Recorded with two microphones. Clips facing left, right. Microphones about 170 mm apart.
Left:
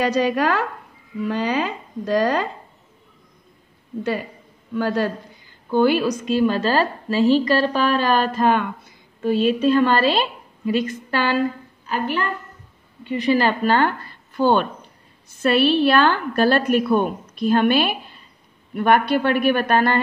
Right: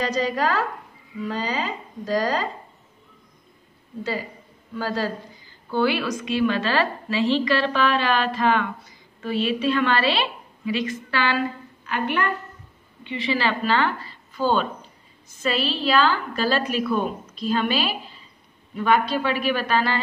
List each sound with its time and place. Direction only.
0.0 s a woman's voice: 65° left (ahead or behind)
4.0 s a woman's voice: 60° left (ahead or behind)
5.7 s a woman's voice: 45° left (ahead or behind)
13.0 s a woman's voice: 45° left (ahead or behind)